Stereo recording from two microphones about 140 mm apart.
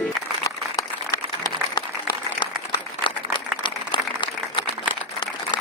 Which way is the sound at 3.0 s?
35° left (ahead or behind).